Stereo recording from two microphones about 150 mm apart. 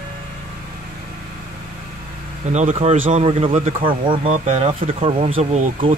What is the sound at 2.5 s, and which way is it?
Speech, 50° right (ahead or behind).